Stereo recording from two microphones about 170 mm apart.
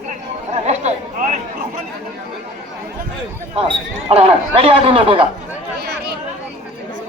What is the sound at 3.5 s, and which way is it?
Speech, 35° right (ahead or behind).